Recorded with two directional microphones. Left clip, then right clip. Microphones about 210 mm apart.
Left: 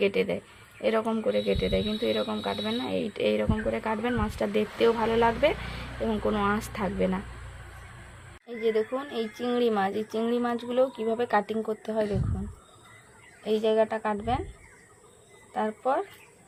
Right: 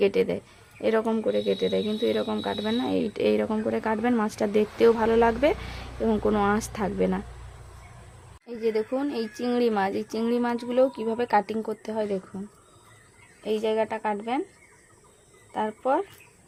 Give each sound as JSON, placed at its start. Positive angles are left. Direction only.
{"t": 0.0, "sound": "speech", "side_deg": -30}
{"t": 8.4, "sound": "a woman's voice", "side_deg": -50}
{"t": 13.4, "sound": "a woman's voice", "side_deg": -50}
{"t": 15.5, "sound": "a woman's voice", "side_deg": -50}